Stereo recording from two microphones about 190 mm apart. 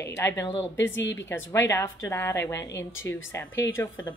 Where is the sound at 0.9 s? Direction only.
75° left (ahead or behind).